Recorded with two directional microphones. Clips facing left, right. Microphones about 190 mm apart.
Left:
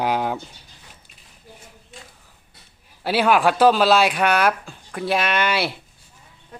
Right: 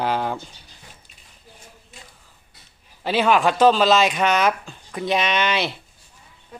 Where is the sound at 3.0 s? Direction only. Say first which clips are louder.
Left 1 dB; 10° left (ahead or behind).